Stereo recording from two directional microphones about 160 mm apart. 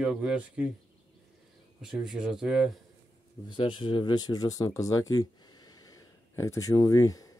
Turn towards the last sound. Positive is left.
turn(degrees=20)  # may be behind; listen again after turning